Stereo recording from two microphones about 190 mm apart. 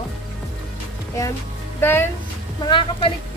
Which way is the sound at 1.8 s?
10° left (ahead or behind).